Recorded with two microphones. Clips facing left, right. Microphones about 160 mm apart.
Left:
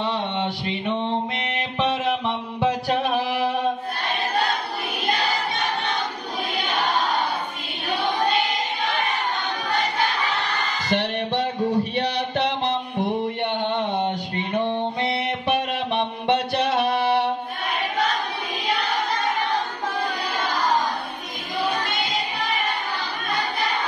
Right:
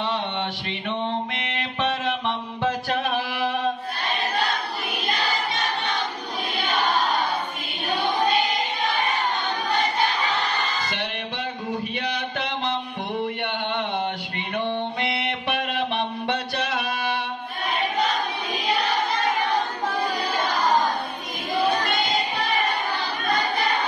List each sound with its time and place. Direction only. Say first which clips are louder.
0.4 s mantra: left 3 dB; 15° left (ahead or behind)
1.8 s music: left 3 dB; 15° left (ahead or behind)
10.9 s music: left 7 dB; 40° left (ahead or behind)
11.9 s a sound: left 4 dB; 35° left (ahead or behind)
14.7 s music: left 2 dB; 20° left (ahead or behind)